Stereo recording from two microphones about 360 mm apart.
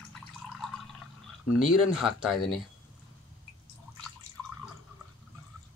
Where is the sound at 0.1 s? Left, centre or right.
Centre.